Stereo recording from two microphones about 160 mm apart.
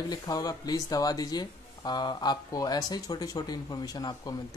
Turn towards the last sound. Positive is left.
turn(degrees=25)  # may be behind; listen again after turning